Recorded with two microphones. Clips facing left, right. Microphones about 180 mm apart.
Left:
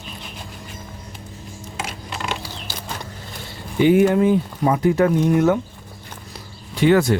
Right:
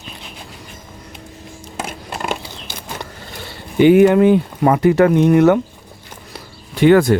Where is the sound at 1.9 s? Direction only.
50° right (ahead or behind).